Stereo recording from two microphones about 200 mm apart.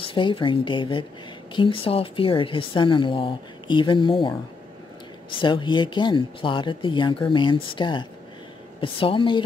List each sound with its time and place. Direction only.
0.0 s a woman's voice: 25° left (ahead or behind)